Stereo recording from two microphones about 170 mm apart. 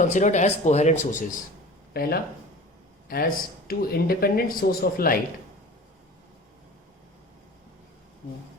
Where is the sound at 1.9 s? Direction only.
65° left (ahead or behind).